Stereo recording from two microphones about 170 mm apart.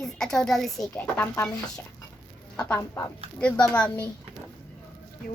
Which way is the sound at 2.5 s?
15° left (ahead or behind).